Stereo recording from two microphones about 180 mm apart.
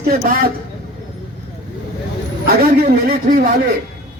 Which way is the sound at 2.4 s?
55° right (ahead or behind).